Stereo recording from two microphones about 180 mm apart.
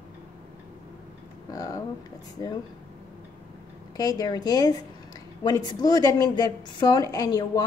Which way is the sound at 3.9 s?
20° left (ahead or behind).